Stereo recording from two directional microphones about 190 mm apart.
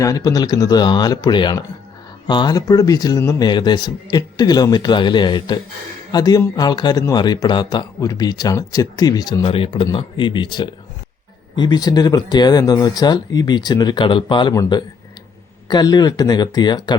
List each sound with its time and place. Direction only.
0.0 s speech: 15° left (ahead or behind)